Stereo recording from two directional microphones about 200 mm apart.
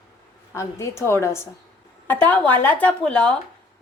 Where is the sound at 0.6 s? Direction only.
15° left (ahead or behind).